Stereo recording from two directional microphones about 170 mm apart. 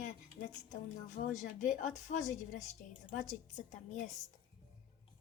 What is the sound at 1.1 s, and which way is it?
A woman's voice, 45° left (ahead or behind).